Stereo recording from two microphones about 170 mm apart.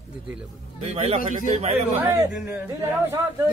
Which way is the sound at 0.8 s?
35° right (ahead or behind).